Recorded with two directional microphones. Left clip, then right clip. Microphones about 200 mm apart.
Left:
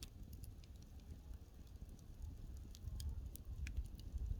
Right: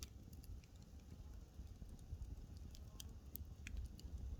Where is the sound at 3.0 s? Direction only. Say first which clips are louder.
Right 3 dB; 10° right (ahead or behind).